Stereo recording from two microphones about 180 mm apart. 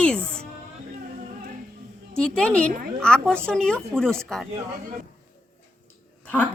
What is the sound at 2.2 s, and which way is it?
A woman's voice, 5° left (ahead or behind).